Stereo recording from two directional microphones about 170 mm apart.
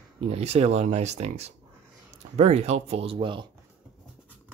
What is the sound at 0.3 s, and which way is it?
Speech, 40° right (ahead or behind).